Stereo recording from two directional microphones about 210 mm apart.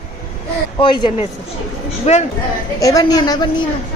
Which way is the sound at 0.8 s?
20° left (ahead or behind).